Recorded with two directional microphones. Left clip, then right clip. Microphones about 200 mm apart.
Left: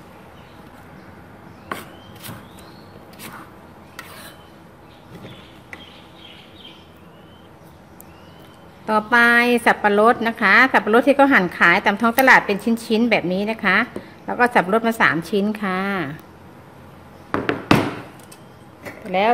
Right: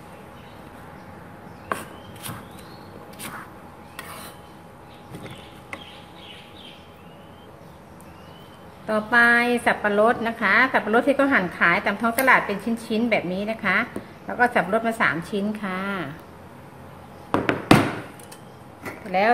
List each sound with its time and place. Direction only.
8.8 s a woman's voice: 50° left (ahead or behind)
19.0 s speech: 30° left (ahead or behind)